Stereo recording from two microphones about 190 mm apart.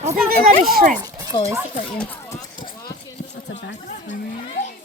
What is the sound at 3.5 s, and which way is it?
Chatter, 70° left (ahead or behind).